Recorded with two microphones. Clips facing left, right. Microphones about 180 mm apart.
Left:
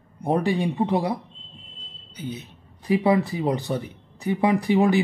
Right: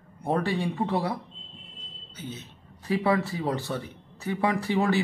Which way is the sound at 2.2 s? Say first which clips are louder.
Left 6 dB; 15° left (ahead or behind).